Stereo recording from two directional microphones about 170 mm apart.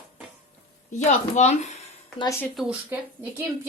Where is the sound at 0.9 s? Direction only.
45° left (ahead or behind).